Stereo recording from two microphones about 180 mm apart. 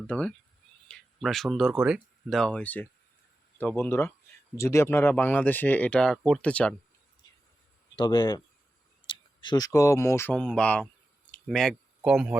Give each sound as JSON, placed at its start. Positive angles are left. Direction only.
{"t": 0.1, "sound": "speech", "side_deg": 5}
{"t": 7.9, "sound": "speech", "side_deg": 25}
{"t": 11.3, "sound": "a sound", "side_deg": 5}